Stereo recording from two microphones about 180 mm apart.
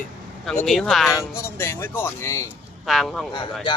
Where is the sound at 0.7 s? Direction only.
Centre (ahead or behind).